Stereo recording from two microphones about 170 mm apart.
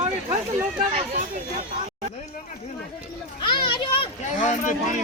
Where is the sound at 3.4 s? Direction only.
30° left (ahead or behind).